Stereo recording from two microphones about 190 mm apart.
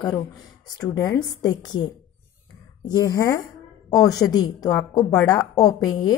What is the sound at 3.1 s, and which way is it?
A woman's voice, 20° left (ahead or behind).